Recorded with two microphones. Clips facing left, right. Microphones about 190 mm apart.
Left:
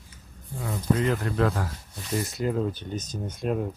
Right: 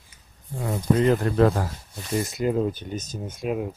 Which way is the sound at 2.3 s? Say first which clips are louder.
Right 4 dB; 15° right (ahead or behind).